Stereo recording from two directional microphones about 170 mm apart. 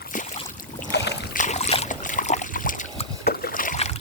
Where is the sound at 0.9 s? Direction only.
80° left.